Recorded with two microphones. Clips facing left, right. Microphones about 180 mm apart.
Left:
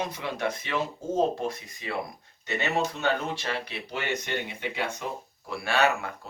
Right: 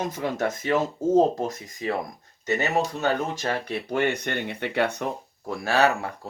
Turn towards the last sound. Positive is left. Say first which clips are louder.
# right 3 dB
turn(degrees=-35)  # may be behind; listen again after turning